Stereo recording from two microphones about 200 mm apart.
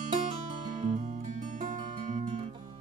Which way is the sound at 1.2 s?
40° right (ahead or behind).